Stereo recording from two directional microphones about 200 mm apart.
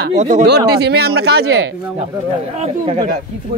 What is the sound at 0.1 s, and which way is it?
Speech, 35° right (ahead or behind).